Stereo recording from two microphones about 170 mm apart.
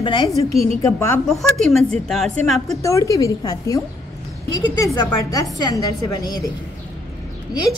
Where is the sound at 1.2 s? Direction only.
Centre (ahead or behind).